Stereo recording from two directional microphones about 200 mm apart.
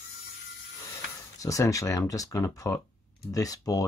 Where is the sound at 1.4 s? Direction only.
15° left (ahead or behind).